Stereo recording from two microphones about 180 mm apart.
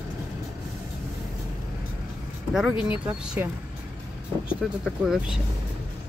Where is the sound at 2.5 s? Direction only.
5° right (ahead or behind).